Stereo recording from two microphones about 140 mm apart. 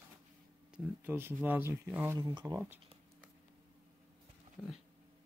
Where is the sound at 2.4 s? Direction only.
20° right (ahead or behind).